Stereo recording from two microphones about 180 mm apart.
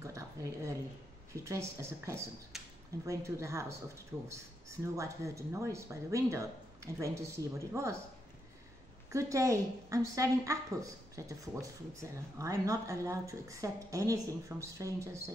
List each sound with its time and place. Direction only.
0.0 s a sound: 15° right (ahead or behind)
1.3 s a woman's voice: 15° right (ahead or behind)
9.1 s a woman's voice: 15° right (ahead or behind)